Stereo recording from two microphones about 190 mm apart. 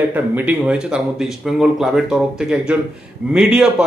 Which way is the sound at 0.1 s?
10° right (ahead or behind).